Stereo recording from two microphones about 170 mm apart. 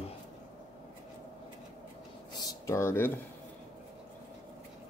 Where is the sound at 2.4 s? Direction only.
20° left (ahead or behind).